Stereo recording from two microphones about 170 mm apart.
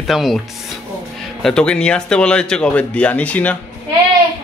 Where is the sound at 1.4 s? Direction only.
5° left (ahead or behind).